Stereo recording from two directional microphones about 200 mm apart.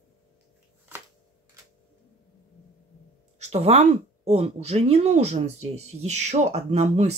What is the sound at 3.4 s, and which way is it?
Speech, 35° right (ahead or behind).